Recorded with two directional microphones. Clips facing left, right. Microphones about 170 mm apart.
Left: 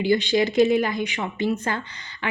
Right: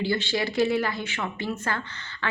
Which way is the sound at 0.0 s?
15° left (ahead or behind).